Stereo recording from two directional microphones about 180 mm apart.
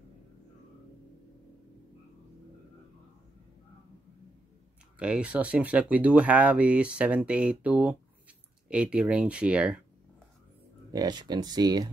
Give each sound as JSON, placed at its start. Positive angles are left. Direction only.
{"t": 4.9, "sound": "speech", "side_deg": -5}
{"t": 10.9, "sound": "speech", "side_deg": -20}